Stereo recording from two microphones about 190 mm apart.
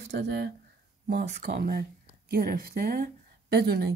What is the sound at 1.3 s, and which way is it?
Speech, 50° right (ahead or behind).